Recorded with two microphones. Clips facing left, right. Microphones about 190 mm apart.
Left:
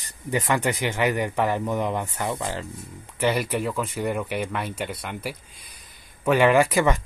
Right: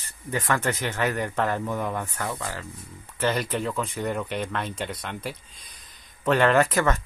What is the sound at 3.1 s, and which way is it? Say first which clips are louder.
Speech: left 2 dB; 10° left (ahead or behind).